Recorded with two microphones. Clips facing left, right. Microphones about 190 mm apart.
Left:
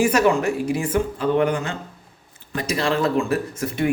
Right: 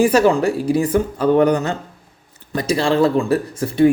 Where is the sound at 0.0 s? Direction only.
30° right (ahead or behind).